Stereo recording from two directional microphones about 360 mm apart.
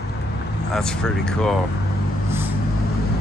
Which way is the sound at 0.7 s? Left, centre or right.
Centre.